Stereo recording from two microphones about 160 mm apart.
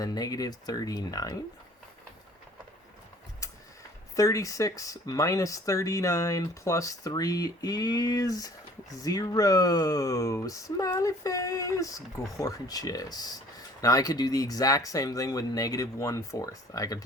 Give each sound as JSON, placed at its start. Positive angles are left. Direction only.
{"t": 0.0, "sound": "speech", "side_deg": 25}
{"t": 4.1, "sound": "speech", "side_deg": 20}